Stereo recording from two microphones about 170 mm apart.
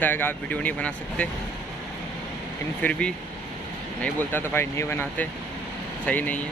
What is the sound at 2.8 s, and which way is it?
Speech, 5° left (ahead or behind).